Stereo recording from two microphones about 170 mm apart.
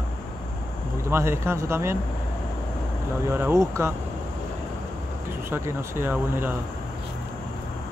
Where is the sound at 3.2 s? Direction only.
15° right (ahead or behind).